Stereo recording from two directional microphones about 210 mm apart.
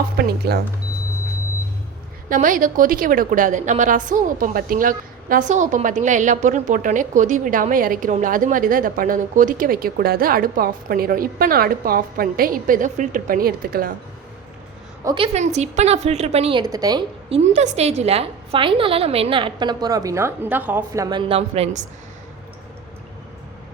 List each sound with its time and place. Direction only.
0.2 s speech: 50° right (ahead or behind)
2.3 s a woman's voice: 40° right (ahead or behind)
15.0 s a woman's voice: 25° right (ahead or behind)
17.3 s a woman's voice: 30° right (ahead or behind)